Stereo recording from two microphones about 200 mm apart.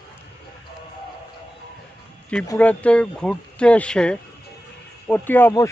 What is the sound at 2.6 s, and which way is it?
A man's voice, 5° left (ahead or behind).